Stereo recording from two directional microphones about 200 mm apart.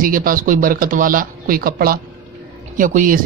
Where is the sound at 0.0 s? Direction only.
45° right (ahead or behind).